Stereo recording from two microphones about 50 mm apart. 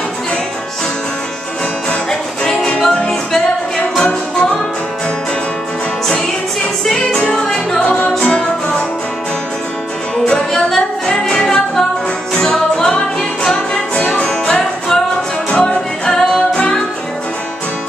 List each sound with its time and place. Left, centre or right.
1.9 s music: centre
7.2 s music: centre
10.2 s music: centre